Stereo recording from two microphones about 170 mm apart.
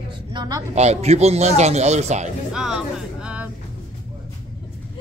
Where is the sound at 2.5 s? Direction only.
5° right (ahead or behind).